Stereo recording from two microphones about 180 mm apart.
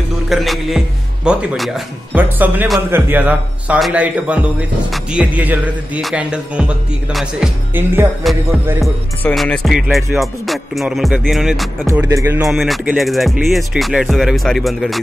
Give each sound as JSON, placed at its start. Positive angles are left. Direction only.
{"t": 0.3, "sound": "music", "side_deg": 0}
{"t": 2.9, "sound": "speech", "side_deg": -10}
{"t": 8.8, "sound": "music", "side_deg": 0}
{"t": 11.8, "sound": "speech", "side_deg": -15}
{"t": 12.4, "sound": "music", "side_deg": 0}